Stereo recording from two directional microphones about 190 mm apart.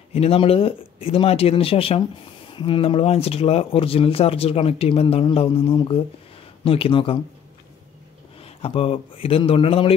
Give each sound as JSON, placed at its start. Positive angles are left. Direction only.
{"t": 0.1, "sound": "speech", "side_deg": 30}
{"t": 8.5, "sound": "speech", "side_deg": 30}